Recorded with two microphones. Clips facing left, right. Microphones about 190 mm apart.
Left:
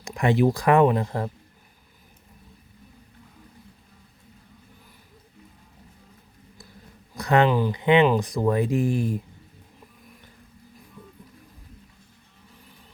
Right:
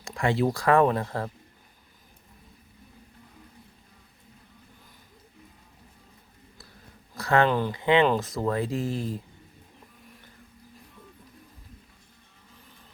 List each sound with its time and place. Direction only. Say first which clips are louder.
0.0 s speech: left 4 dB; 20° left (ahead or behind)
7.2 s speech: left 3 dB; 20° left (ahead or behind)